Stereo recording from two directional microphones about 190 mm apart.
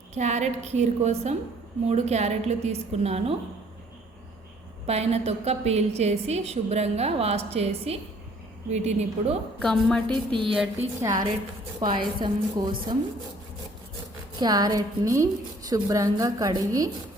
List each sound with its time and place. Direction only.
0.1 s a woman's voice: 35° right (ahead or behind)
4.9 s a woman's voice: 35° right (ahead or behind)
9.6 s a woman's voice: 5° left (ahead or behind)
10.1 s a woman's voice: 25° right (ahead or behind)
14.3 s a woman's voice: 20° right (ahead or behind)